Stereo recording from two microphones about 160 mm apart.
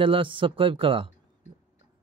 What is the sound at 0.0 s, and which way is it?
A man's voice, 35° right (ahead or behind).